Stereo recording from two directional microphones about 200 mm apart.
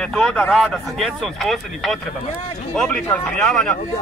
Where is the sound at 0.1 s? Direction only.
5° left (ahead or behind).